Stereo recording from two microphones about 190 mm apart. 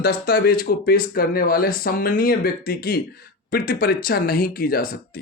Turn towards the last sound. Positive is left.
turn(degrees=50)  # may be behind; listen again after turning